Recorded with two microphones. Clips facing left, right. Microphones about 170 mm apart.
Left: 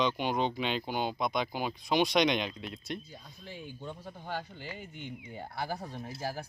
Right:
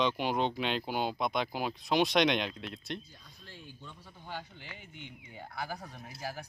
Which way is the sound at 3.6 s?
55° left (ahead or behind).